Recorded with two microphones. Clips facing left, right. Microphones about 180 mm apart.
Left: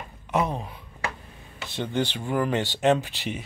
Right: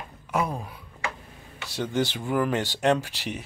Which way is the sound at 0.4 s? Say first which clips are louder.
Left 2 dB; 25° left (ahead or behind).